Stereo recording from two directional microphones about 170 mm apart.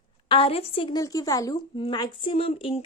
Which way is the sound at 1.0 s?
20° left (ahead or behind).